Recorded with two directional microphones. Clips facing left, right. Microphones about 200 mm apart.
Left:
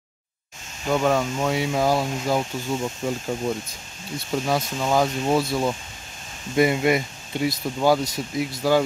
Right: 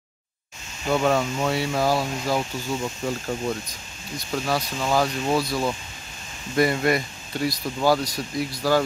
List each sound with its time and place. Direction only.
0.9 s speech: centre (ahead or behind)
1.5 s speech: 15° left (ahead or behind)